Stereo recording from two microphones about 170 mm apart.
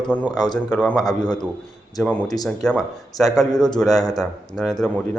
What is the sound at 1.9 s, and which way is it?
Speech, centre (ahead or behind).